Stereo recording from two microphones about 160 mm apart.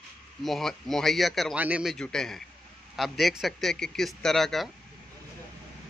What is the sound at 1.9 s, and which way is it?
Speech, 5° left (ahead or behind).